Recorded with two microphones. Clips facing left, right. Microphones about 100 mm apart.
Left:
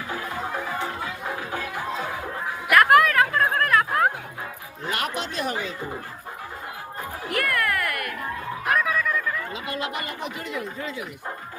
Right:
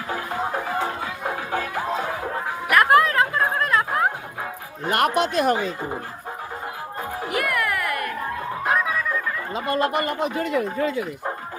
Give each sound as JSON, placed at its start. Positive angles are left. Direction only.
{"t": 2.6, "sound": "music", "side_deg": -25}
{"t": 4.9, "sound": "speech", "side_deg": -55}
{"t": 7.3, "sound": "cat", "side_deg": -15}
{"t": 8.6, "sound": "music", "side_deg": -20}
{"t": 9.5, "sound": "speech", "side_deg": -40}